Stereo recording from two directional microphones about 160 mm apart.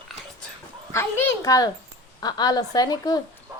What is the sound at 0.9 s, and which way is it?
A woman's voice, 15° left (ahead or behind).